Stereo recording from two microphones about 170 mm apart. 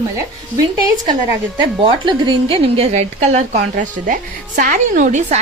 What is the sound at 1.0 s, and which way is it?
A woman's voice, 25° right (ahead or behind).